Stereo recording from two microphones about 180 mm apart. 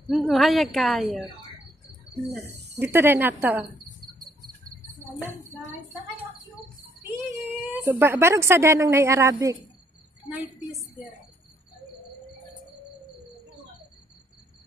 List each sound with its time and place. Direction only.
0.1 s a woman's voice: centre (ahead or behind)
2.8 s speech: 10° right (ahead or behind)
7.2 s speech: 15° right (ahead or behind)
10.3 s a woman's voice: centre (ahead or behind)